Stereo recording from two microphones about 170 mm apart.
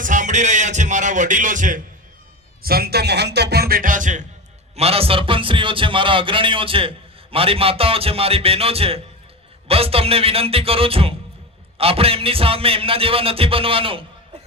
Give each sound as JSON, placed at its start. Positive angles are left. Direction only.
{"t": 0.0, "sound": "music", "side_deg": -50}
{"t": 2.6, "sound": "speech", "side_deg": -65}
{"t": 4.8, "sound": "a man's voice", "side_deg": -35}